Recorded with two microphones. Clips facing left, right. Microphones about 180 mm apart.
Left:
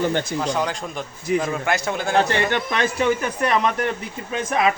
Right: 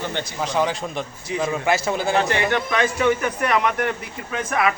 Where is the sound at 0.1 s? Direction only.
45° left (ahead or behind).